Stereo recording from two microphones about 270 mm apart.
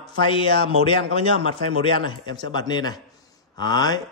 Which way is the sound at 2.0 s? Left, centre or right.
Centre.